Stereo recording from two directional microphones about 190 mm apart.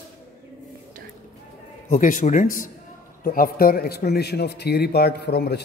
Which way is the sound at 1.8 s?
45° left (ahead or behind).